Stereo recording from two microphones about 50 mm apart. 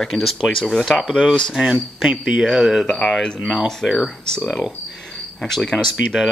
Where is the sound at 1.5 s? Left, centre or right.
Centre.